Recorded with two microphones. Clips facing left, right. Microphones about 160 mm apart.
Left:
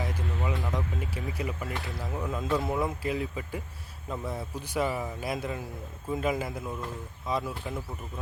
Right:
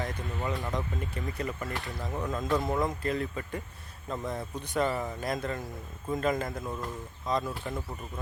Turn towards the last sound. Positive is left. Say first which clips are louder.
# right 1 dB
turn(degrees=5)  # may be behind; listen again after turning